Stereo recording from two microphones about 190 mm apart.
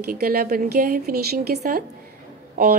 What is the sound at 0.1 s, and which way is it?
A woman's voice, 55° right (ahead or behind).